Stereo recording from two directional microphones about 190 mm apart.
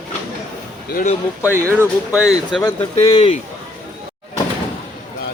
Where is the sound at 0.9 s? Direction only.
50° left (ahead or behind).